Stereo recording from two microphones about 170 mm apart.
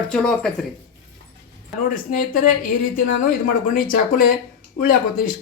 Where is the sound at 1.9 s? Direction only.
50° left (ahead or behind).